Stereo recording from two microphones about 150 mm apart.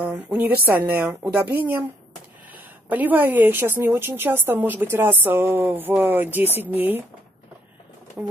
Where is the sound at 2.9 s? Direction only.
10° right (ahead or behind).